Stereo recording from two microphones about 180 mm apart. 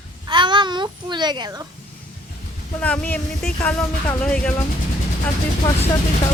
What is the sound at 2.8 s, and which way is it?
Speech, 10° left (ahead or behind).